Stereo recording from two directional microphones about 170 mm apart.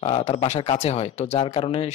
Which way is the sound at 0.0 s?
40° left (ahead or behind).